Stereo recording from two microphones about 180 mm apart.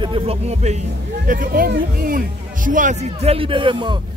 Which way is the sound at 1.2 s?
50° right (ahead or behind).